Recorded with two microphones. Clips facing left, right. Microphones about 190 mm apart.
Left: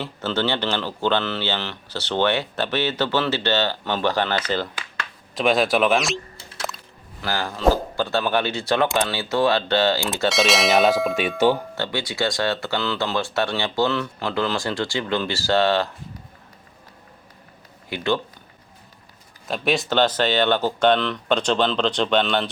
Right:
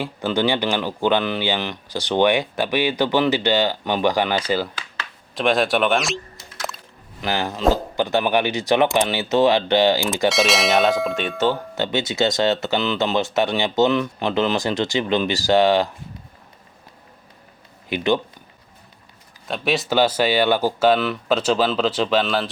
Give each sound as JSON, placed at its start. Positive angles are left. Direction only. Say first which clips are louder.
{"t": 0.0, "sound": "speech", "louder": "right 3 dB", "side_deg": -15}
{"t": 5.3, "sound": "speech", "louder": "even", "side_deg": 0}
{"t": 7.2, "sound": "speech", "louder": "right 3 dB", "side_deg": -20}
{"t": 10.2, "sound": "speech", "louder": "even", "side_deg": 0}
{"t": 11.7, "sound": "speech", "louder": "right 4 dB", "side_deg": -20}
{"t": 17.8, "sound": "speech", "louder": "right 3 dB", "side_deg": -20}
{"t": 19.5, "sound": "speech", "louder": "even", "side_deg": 0}